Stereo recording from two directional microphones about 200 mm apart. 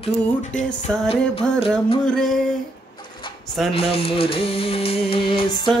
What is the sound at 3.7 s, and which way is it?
Music, 30° left (ahead or behind).